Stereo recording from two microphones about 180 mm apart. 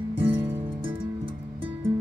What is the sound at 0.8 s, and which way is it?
Music, 30° right (ahead or behind).